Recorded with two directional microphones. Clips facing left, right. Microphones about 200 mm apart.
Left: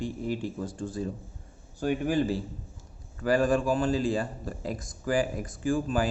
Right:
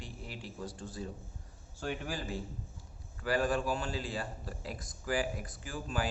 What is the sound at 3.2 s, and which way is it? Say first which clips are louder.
Speech: left 7 dB; 45° left (ahead or behind).